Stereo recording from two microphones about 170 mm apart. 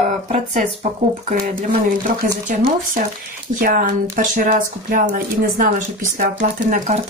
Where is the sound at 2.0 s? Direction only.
55° right (ahead or behind).